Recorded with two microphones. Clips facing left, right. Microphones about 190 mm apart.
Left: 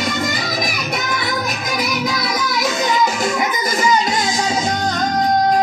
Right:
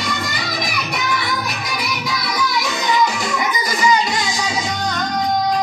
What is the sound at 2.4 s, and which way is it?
Music, 50° left (ahead or behind).